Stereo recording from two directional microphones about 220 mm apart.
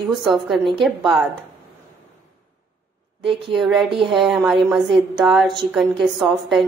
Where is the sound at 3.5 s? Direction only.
Centre (ahead or behind).